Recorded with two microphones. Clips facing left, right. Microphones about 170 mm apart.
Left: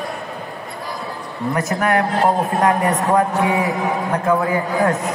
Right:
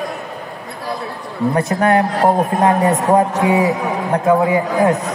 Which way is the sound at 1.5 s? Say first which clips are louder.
Right 3 dB; 25° right (ahead or behind).